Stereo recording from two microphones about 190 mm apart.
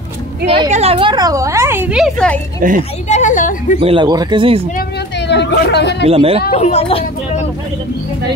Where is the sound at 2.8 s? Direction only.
35° left (ahead or behind).